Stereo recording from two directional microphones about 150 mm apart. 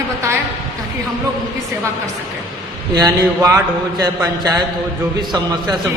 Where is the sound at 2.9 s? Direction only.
25° right (ahead or behind).